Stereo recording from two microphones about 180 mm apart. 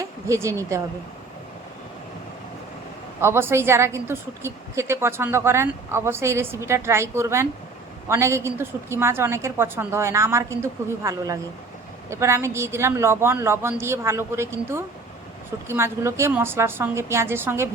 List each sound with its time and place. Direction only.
0.0 s speech: 15° right (ahead or behind)
3.2 s a woman's voice: 15° right (ahead or behind)